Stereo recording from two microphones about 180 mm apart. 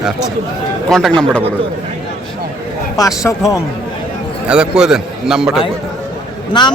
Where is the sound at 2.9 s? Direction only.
20° left (ahead or behind).